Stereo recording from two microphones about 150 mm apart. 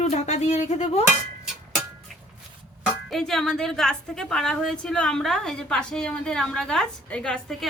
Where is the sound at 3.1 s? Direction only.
5° left (ahead or behind).